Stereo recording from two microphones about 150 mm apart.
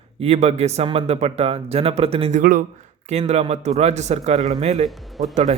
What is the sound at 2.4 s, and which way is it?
Speech, 65° right (ahead or behind).